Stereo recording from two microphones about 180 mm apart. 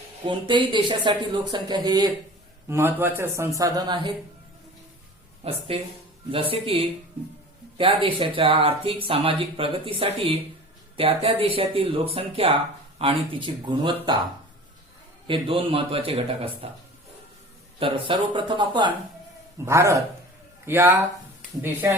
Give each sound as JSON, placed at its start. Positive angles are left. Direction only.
{"t": 0.3, "sound": "speech", "side_deg": -25}
{"t": 5.4, "sound": "a man's voice", "side_deg": -35}
{"t": 15.3, "sound": "a man's voice", "side_deg": -30}
{"t": 17.7, "sound": "speech", "side_deg": -30}
{"t": 19.6, "sound": "speech", "side_deg": -15}